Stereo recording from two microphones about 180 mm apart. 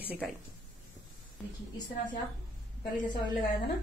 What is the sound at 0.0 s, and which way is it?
Speech, 10° right (ahead or behind).